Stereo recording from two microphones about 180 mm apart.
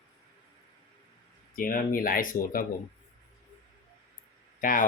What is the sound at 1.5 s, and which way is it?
Speech, 50° left (ahead or behind).